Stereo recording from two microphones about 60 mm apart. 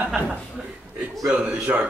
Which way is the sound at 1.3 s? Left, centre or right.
Centre.